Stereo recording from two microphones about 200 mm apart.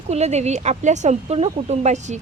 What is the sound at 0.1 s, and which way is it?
Speech, 35° right (ahead or behind).